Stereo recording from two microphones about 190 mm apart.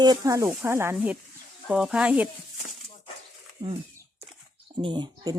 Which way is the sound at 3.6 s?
25° right (ahead or behind).